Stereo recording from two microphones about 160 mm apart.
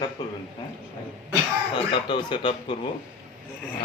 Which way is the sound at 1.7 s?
30° left (ahead or behind).